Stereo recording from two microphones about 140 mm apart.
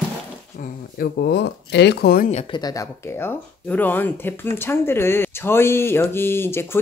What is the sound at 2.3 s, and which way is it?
Speech, 35° left (ahead or behind).